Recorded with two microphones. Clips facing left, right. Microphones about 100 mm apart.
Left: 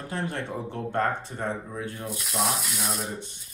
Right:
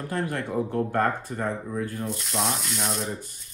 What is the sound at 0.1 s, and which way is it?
Speech, 55° right (ahead or behind).